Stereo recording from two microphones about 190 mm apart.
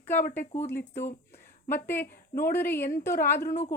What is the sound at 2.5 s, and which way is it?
Speech, 10° left (ahead or behind).